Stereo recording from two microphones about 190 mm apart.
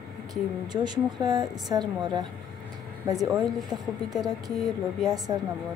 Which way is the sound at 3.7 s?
20° right (ahead or behind).